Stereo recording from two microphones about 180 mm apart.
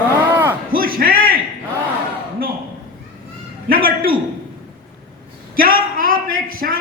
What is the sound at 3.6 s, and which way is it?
Speech, 55° right (ahead or behind).